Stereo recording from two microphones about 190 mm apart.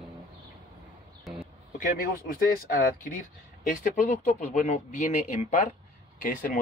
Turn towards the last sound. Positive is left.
turn(degrees=45)  # may be behind; listen again after turning